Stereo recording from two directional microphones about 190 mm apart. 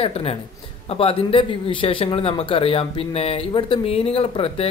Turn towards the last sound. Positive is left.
turn(degrees=30)  # may be behind; listen again after turning